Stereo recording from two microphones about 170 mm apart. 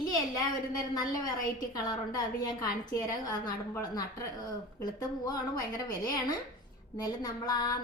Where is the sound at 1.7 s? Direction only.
20° left (ahead or behind).